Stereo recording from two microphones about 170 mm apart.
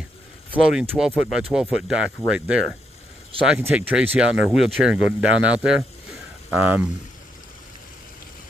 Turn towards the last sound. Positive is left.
turn(degrees=-10)  # may be behind; listen again after turning